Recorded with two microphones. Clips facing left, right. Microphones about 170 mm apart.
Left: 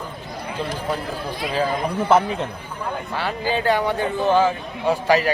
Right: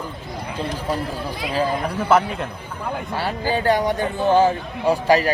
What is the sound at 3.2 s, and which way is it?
Speech, 40° right (ahead or behind).